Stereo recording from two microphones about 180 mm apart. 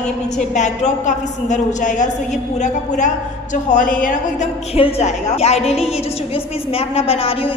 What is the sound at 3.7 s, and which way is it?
A woman's voice, 45° left (ahead or behind).